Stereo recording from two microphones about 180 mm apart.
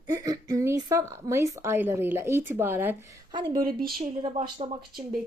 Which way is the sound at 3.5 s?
55° right (ahead or behind).